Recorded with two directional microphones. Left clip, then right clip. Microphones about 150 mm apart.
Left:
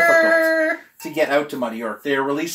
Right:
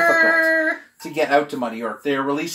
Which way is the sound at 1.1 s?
5° right (ahead or behind).